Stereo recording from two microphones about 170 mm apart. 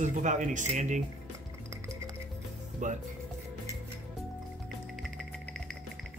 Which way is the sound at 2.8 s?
45° right (ahead or behind).